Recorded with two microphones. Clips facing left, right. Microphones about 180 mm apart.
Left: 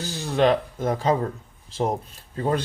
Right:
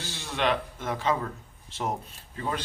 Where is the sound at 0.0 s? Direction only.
40° left (ahead or behind).